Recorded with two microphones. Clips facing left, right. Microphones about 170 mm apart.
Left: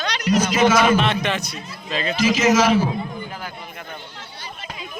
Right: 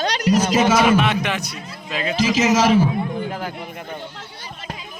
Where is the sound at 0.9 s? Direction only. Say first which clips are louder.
Right 1 dB; 15° right (ahead or behind).